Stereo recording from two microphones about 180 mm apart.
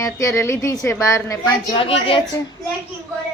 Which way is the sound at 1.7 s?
30° left (ahead or behind).